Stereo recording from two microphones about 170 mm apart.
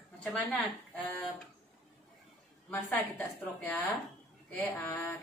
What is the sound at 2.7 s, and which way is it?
A woman's voice, 10° left (ahead or behind).